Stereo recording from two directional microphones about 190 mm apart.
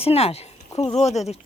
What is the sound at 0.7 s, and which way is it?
Speech, 20° left (ahead or behind).